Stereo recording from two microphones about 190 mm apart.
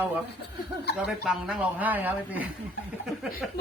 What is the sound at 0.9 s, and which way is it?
Speech, 5° right (ahead or behind).